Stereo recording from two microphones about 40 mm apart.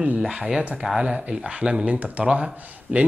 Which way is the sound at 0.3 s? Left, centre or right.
Centre.